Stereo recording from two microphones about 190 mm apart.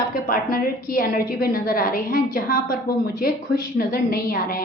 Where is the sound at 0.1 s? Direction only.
50° left (ahead or behind).